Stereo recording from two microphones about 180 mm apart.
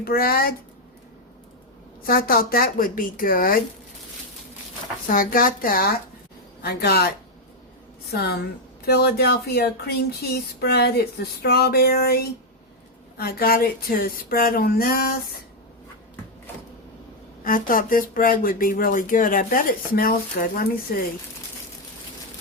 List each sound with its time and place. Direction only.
0.0 s speech: 55° left (ahead or behind)
2.0 s speech: 55° left (ahead or behind)
5.0 s speech: 50° left (ahead or behind)
8.1 s speech: 60° left (ahead or behind)
17.4 s speech: 50° left (ahead or behind)